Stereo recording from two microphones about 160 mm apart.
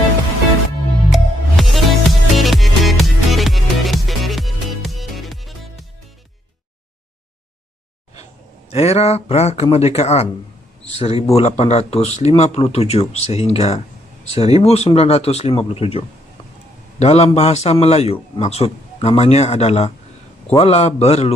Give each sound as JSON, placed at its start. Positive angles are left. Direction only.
{"t": 1.1, "sound": "music", "side_deg": 0}
{"t": 8.2, "sound": "a man's voice", "side_deg": 40}
{"t": 17.0, "sound": "a man's voice", "side_deg": 40}